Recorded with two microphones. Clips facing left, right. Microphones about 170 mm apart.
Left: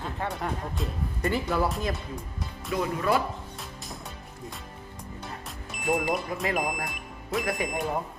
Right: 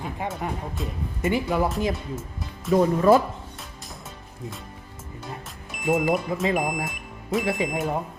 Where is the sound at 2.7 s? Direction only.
40° right (ahead or behind).